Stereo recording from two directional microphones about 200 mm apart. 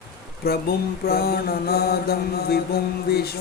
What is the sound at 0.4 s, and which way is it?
Mantra, 50° left (ahead or behind).